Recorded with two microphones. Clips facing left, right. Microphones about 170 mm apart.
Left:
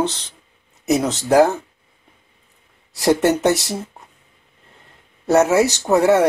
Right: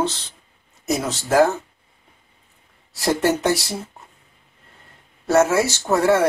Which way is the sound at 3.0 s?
20° left (ahead or behind).